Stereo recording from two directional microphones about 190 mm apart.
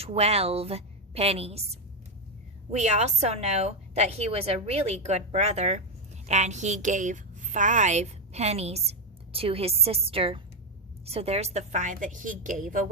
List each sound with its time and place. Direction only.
0.0 s a woman's voice: 35° right (ahead or behind)